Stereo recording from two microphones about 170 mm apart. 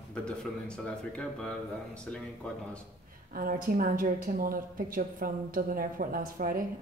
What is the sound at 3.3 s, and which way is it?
A woman's voice, 55° right (ahead or behind).